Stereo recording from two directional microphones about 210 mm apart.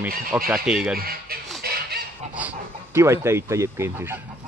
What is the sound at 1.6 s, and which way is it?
Fowl, 50° right (ahead or behind).